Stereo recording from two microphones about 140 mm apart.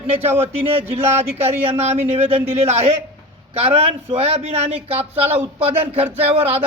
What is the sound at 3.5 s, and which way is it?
A man's voice, 45° right (ahead or behind).